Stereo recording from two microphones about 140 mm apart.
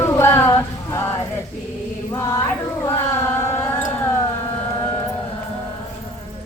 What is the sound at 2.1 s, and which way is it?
Music, 25° left (ahead or behind).